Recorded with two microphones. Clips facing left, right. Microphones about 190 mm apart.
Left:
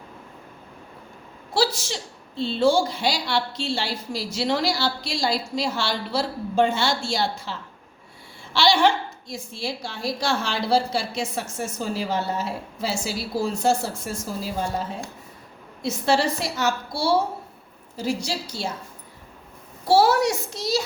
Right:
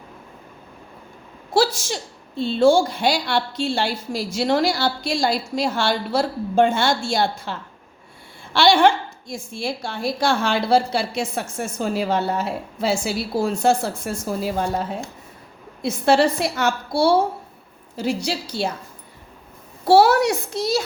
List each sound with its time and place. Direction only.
1.5 s a woman's voice: 50° right (ahead or behind)
15.8 s a woman's voice: 55° right (ahead or behind)
19.8 s a woman's voice: 65° right (ahead or behind)